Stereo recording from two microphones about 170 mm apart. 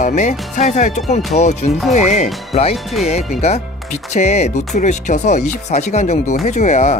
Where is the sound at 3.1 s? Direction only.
40° left (ahead or behind).